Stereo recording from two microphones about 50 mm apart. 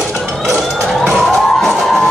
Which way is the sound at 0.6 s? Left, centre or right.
Centre.